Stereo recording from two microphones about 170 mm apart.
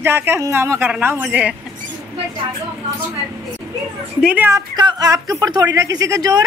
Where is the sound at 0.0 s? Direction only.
15° right (ahead or behind).